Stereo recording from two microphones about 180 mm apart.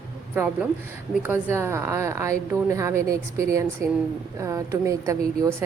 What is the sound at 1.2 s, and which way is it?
A woman's voice, 10° right (ahead or behind).